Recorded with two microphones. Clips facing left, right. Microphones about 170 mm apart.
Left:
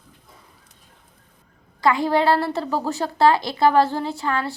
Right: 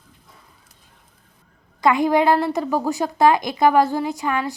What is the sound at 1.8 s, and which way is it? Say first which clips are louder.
A woman's voice: right 2 dB; 20° right (ahead or behind).